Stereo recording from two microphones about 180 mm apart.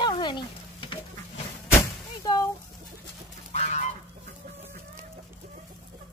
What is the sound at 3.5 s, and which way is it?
Fowl, 40° left (ahead or behind).